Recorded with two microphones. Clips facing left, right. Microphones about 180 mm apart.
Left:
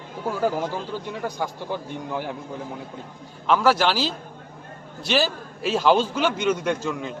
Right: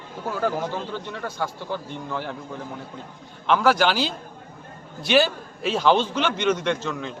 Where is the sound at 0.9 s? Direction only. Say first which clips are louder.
Left 2 dB; 15° left (ahead or behind).